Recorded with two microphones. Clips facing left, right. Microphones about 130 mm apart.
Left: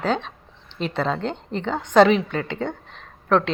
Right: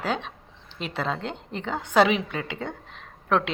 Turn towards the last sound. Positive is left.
turn(degrees=-10)  # may be behind; listen again after turning